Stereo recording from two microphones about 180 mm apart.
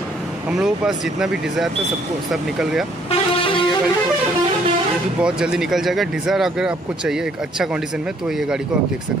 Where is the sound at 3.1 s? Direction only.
30° left (ahead or behind).